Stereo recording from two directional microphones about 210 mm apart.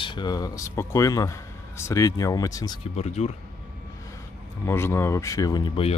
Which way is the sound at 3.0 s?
30° left (ahead or behind).